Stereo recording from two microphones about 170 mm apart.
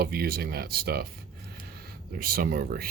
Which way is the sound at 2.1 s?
60° right (ahead or behind).